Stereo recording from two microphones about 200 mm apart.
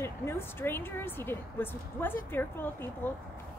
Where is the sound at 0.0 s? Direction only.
10° left (ahead or behind).